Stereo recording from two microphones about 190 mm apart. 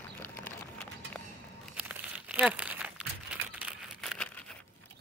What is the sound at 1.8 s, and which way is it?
Crumpling, 5° right (ahead or behind).